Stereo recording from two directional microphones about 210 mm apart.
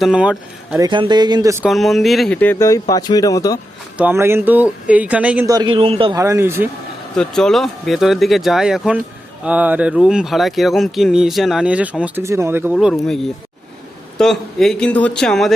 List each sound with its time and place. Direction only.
0.0 s speech: 5° right (ahead or behind)
0.8 s speech: 20° right (ahead or behind)
1.6 s speech: centre (ahead or behind); by 3.6 s 15° left (ahead or behind)
3.9 s speech: 10° right (ahead or behind)
7.2 s speech: centre (ahead or behind)
12.7 s speech: centre (ahead or behind)